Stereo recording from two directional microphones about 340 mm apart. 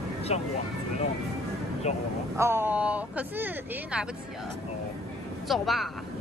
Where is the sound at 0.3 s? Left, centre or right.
Centre.